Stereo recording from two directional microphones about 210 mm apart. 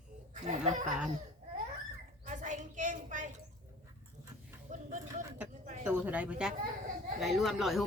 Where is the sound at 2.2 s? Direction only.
35° right (ahead or behind).